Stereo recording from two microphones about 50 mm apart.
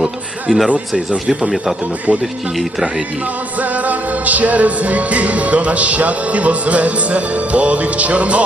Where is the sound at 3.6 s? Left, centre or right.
Right.